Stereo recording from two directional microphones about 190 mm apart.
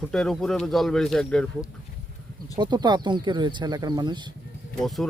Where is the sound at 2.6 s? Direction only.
25° right (ahead or behind).